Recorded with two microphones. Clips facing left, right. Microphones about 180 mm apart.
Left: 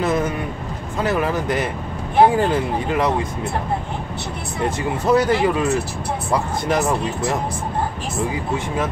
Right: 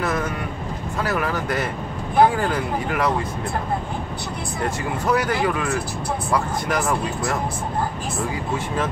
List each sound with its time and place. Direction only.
1.0 s speech: 20° left (ahead or behind)
4.6 s speech: 25° left (ahead or behind)